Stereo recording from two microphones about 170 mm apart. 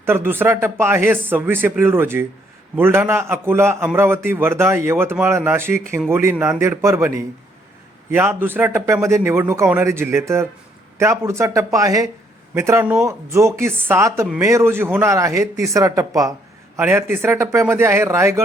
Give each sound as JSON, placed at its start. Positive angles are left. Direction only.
{"t": 0.0, "sound": "a man's voice", "side_deg": -15}